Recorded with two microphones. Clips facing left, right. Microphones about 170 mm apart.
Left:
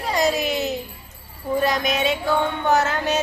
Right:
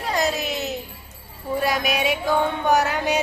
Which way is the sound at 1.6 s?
10° right (ahead or behind).